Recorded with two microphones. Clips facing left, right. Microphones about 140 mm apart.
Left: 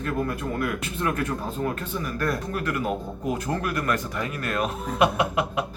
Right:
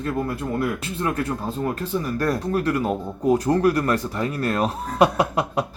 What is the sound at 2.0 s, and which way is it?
Speech, 35° right (ahead or behind).